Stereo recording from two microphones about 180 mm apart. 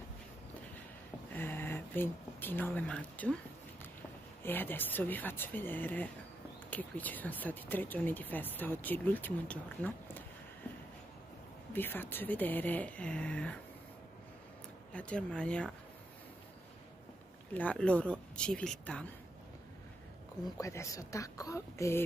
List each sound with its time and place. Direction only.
1.3 s a sound: 10° left (ahead or behind)
4.4 s speech: 10° left (ahead or behind)
11.7 s speech: 10° left (ahead or behind)
14.9 s speech: 5° left (ahead or behind)
17.6 s speech: 5° left (ahead or behind)
20.5 s speech: 15° left (ahead or behind)